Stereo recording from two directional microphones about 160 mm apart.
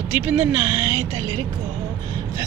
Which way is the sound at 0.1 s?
15° right (ahead or behind).